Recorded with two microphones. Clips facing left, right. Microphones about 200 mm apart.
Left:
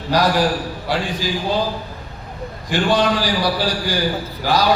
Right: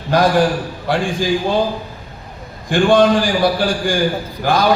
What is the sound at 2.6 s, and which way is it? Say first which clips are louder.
A man's voice: right 6 dB; 50° right (ahead or behind).